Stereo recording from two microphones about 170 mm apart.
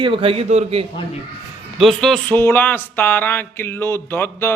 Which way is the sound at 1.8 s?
Centre (ahead or behind).